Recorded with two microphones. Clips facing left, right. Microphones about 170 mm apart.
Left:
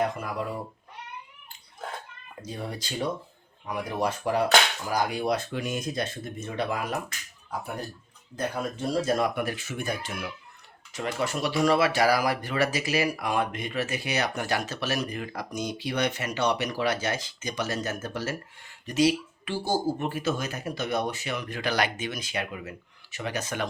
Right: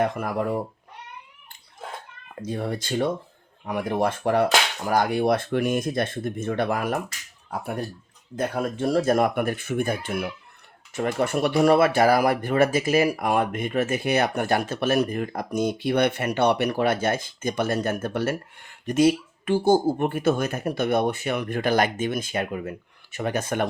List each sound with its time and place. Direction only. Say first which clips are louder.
0.0 s speech: right 4 dB; 55° right (ahead or behind)
2.5 s speech: right 7 dB; 55° right (ahead or behind)
8.4 s speech: right 5 dB; 55° right (ahead or behind)